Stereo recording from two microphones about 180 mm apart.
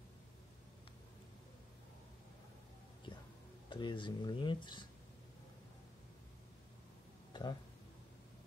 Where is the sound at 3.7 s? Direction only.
25° left (ahead or behind).